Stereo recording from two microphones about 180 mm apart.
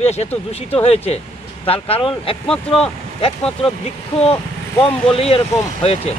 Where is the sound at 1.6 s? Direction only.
30° left (ahead or behind).